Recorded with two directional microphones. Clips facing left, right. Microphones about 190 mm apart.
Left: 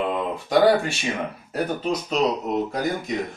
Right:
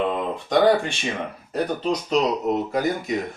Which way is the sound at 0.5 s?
5° left (ahead or behind).